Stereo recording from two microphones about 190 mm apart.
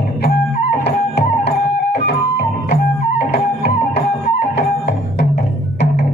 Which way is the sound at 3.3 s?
60° left (ahead or behind).